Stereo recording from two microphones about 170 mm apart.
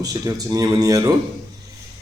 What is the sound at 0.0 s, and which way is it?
A man's voice, 20° right (ahead or behind).